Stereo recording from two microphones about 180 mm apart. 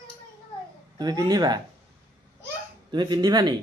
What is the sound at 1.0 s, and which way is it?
Speech, 20° right (ahead or behind).